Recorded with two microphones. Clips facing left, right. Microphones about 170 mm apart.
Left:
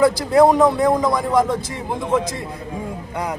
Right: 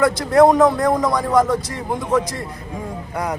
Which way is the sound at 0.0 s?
Centre (ahead or behind).